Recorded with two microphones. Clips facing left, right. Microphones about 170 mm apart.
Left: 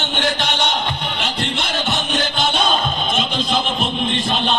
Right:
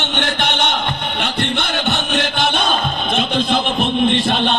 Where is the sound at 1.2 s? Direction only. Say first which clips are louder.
Right 4 dB; 60° right (ahead or behind).